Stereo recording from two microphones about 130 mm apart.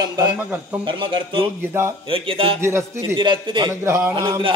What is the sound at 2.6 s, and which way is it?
Speech, 20° right (ahead or behind).